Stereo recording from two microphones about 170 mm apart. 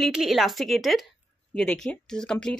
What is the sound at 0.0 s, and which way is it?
A woman's voice, centre (ahead or behind).